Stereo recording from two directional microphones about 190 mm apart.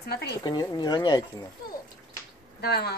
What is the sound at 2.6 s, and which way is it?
Speech, 55° left (ahead or behind).